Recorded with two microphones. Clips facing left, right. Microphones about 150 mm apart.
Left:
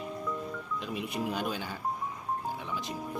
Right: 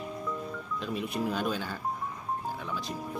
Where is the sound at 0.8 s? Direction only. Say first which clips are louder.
Right 3 dB; 15° left (ahead or behind).